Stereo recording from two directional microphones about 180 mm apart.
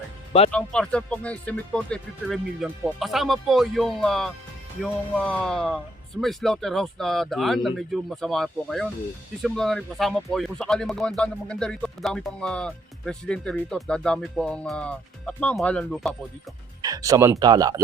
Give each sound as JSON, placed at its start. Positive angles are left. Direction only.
{"t": 0.5, "sound": "speech", "side_deg": 5}
{"t": 16.8, "sound": "speech", "side_deg": -20}